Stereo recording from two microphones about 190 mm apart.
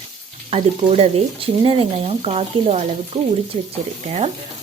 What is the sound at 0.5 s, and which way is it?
Speech, 30° right (ahead or behind).